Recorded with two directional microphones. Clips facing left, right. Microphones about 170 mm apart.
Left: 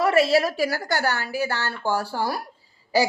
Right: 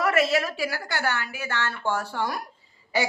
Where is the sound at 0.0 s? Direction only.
30° left (ahead or behind).